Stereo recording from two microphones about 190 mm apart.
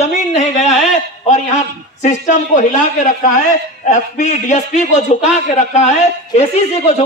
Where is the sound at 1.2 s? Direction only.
40° left (ahead or behind).